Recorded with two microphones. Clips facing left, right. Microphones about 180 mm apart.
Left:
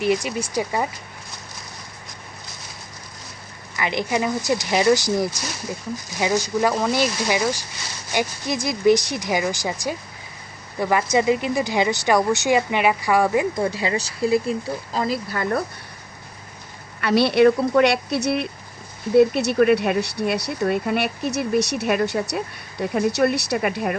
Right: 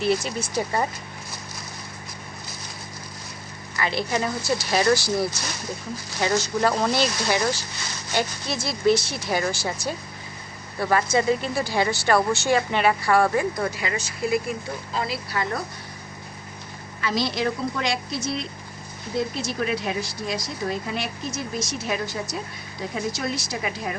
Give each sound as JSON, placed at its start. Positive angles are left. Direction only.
{"t": 0.0, "sound": "speech", "side_deg": 15}
{"t": 3.8, "sound": "speech", "side_deg": 15}
{"t": 14.9, "sound": "speech", "side_deg": 45}
{"t": 17.0, "sound": "speech", "side_deg": 65}